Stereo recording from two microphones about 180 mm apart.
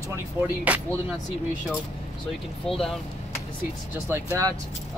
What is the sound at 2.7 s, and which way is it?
Speech, centre (ahead or behind).